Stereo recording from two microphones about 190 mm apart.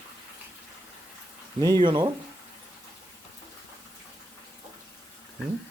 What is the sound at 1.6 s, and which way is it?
Speech, 25° right (ahead or behind).